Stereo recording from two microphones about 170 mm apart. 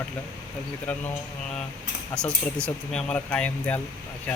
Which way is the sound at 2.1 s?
5° left (ahead or behind).